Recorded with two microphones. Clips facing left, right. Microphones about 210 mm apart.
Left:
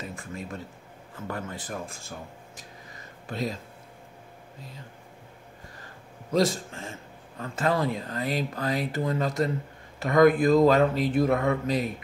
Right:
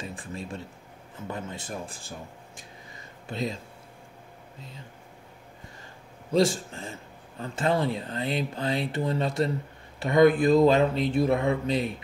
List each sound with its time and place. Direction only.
0.1 s speech: 30° right (ahead or behind)
3.3 s speech: 25° right (ahead or behind)
7.3 s speech: 30° right (ahead or behind)